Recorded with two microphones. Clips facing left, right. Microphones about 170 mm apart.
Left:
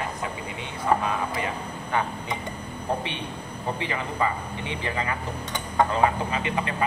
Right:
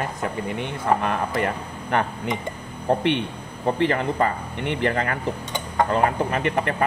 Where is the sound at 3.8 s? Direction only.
55° right (ahead or behind).